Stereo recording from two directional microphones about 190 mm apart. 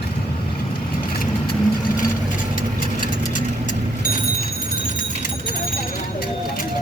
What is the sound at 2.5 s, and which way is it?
Vehicle, 45° left (ahead or behind).